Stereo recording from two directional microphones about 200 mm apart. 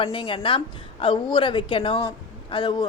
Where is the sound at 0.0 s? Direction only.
25° left (ahead or behind).